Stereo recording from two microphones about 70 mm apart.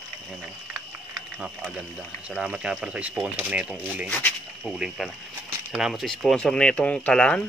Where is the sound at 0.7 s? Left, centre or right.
Centre.